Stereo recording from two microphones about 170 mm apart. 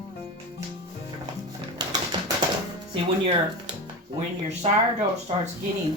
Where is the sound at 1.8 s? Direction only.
25° right (ahead or behind).